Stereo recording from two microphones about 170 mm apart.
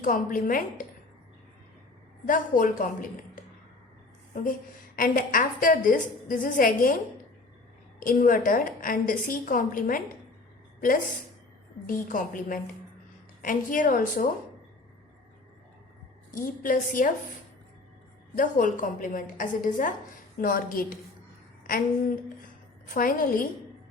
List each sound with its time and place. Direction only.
0.0 s a woman's voice: 55° left (ahead or behind)
2.2 s a woman's voice: 50° left (ahead or behind)
4.9 s a woman's voice: 55° left (ahead or behind)
7.9 s a woman's voice: 55° left (ahead or behind)
16.3 s a woman's voice: 50° left (ahead or behind)
18.3 s a woman's voice: 50° left (ahead or behind)